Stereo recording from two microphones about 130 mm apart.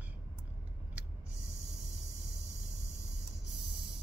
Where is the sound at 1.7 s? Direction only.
20° left (ahead or behind).